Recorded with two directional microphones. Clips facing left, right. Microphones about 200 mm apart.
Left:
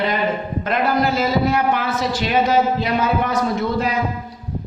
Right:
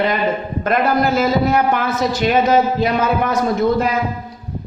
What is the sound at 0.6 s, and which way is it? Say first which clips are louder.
A man's voice: right 3 dB; 45° right (ahead or behind).